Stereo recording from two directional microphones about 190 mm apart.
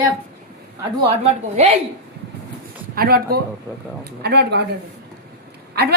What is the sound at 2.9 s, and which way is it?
Speech, 50° right (ahead or behind).